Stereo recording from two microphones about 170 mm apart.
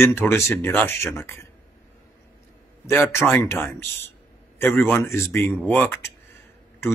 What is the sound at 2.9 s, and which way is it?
Speech, 15° left (ahead or behind).